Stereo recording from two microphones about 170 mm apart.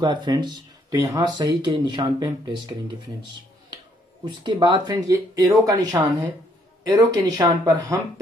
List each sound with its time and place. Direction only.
0.0 s speech: 25° right (ahead or behind)
4.2 s speech: 25° right (ahead or behind)